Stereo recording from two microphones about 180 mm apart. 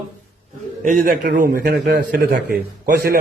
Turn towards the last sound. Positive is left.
turn(degrees=-55)  # may be behind; listen again after turning